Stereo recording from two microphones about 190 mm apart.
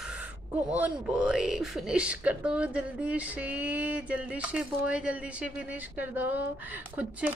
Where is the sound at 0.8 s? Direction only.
5° right (ahead or behind).